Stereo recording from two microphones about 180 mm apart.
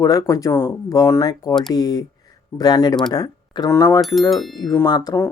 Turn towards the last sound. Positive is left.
turn(degrees=20)  # may be behind; listen again after turning